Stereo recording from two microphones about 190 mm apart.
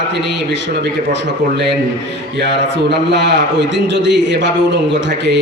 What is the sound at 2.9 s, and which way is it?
A man's voice, 65° right (ahead or behind).